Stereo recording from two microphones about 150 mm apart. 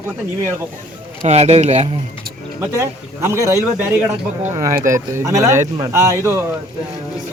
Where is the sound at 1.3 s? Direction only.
45° right (ahead or behind).